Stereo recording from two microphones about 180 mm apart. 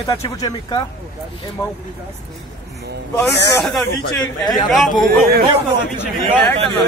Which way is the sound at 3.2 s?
Centre (ahead or behind).